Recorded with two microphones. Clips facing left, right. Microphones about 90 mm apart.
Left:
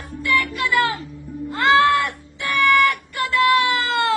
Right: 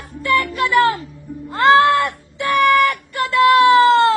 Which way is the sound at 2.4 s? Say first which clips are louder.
Right 3 dB; 35° right (ahead or behind).